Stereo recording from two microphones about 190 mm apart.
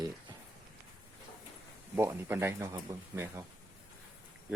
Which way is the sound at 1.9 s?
10° right (ahead or behind).